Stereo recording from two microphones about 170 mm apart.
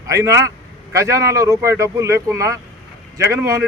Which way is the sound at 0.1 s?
20° right (ahead or behind).